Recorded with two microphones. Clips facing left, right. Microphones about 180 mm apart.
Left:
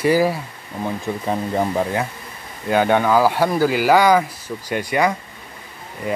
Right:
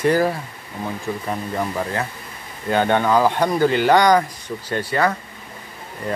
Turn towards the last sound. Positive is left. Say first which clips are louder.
# left 2 dB
turn(degrees=10)  # may be behind; listen again after turning